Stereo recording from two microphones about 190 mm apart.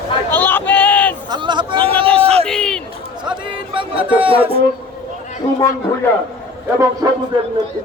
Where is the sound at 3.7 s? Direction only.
25° right (ahead or behind).